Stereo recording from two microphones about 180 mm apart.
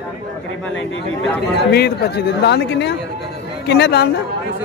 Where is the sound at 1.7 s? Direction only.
65° left (ahead or behind).